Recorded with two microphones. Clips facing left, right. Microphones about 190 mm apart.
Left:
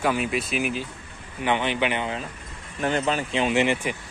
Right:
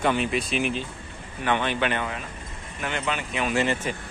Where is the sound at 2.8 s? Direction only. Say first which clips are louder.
Left 5 dB; 35° left (ahead or behind); by 4.0 s 15° left (ahead or behind).